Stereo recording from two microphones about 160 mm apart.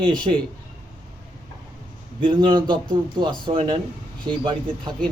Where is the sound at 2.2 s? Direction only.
30° right (ahead or behind).